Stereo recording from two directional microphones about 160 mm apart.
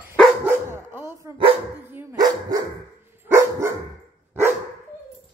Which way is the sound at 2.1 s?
25° right (ahead or behind).